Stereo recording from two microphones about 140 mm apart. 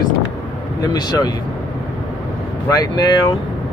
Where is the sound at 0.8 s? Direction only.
30° left (ahead or behind).